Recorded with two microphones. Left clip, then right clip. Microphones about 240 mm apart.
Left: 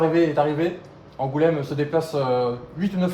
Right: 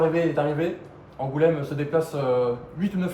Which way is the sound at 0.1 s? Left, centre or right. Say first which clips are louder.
Left 3 dB; left.